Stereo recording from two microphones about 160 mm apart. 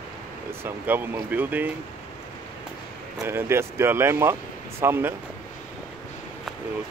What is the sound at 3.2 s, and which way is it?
Speech, 15° right (ahead or behind).